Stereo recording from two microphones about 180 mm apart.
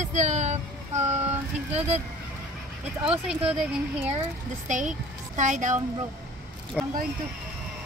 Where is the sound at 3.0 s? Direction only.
5° right (ahead or behind).